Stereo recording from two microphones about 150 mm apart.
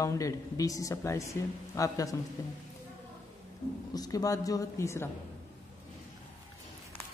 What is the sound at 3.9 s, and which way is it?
Speech, 25° left (ahead or behind).